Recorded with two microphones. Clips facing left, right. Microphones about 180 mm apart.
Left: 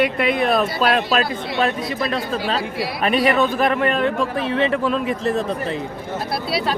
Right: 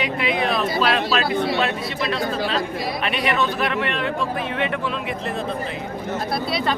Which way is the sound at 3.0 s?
40° left (ahead or behind).